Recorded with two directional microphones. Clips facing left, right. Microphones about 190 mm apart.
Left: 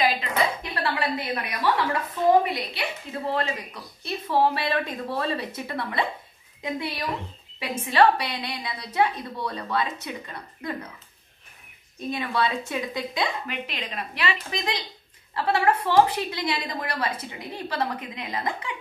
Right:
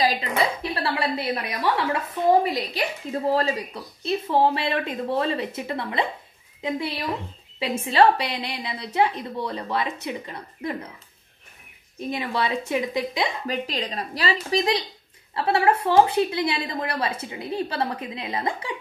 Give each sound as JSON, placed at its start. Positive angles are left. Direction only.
{"t": 0.2, "sound": "a sound", "side_deg": -25}
{"t": 2.4, "sound": "a woman's voice", "side_deg": -40}
{"t": 12.1, "sound": "a woman's voice", "side_deg": -20}
{"t": 13.5, "sound": "a woman's voice", "side_deg": -35}